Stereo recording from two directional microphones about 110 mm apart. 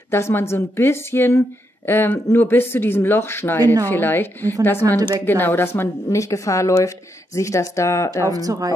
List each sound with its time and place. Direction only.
0.1 s speech: 20° left (ahead or behind)
8.3 s speech: 35° right (ahead or behind)